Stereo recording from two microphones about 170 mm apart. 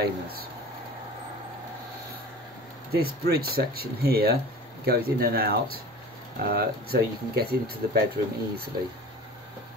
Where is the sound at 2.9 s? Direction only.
65° right (ahead or behind).